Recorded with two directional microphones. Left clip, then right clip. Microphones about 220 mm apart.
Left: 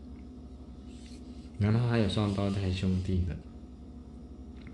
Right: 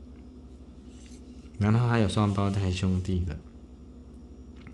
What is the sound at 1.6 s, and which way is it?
Speech, 55° right (ahead or behind).